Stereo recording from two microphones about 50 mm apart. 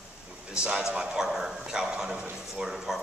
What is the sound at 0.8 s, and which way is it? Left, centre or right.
A man's voice, centre.